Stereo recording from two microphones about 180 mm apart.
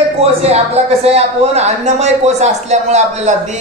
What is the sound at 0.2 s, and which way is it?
A man's voice, 35° right (ahead or behind).